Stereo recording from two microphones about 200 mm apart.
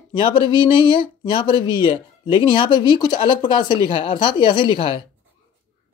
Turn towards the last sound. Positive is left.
turn(degrees=25)  # may be behind; listen again after turning